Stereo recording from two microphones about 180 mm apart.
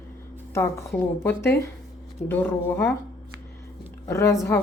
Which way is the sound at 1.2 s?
15° left (ahead or behind).